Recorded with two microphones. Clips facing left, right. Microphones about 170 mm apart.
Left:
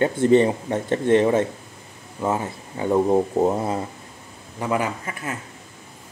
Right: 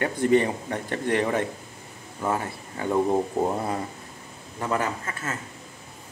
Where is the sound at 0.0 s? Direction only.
25° left (ahead or behind).